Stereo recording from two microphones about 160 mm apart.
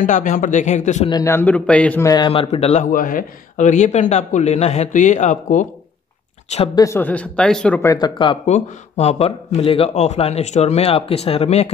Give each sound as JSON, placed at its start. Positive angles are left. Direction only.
{"t": 0.0, "sound": "speech", "side_deg": 55}
{"t": 1.2, "sound": "speech", "side_deg": 15}
{"t": 2.0, "sound": "speech", "side_deg": 30}
{"t": 2.4, "sound": "a man's voice", "side_deg": 40}
{"t": 2.9, "sound": "speech", "side_deg": 60}
{"t": 6.7, "sound": "speech", "side_deg": 20}
{"t": 7.8, "sound": "speech", "side_deg": 25}
{"t": 8.5, "sound": "a man's voice", "side_deg": 45}